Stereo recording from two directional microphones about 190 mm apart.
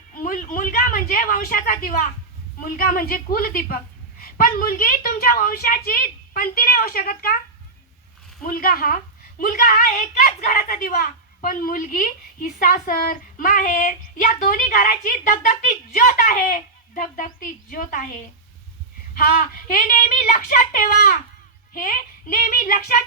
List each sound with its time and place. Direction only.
0.1 s a woman's voice: 45° left (ahead or behind)
8.4 s a woman's voice: 50° left (ahead or behind)